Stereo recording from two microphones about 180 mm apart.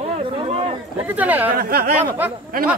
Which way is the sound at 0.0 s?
30° right (ahead or behind).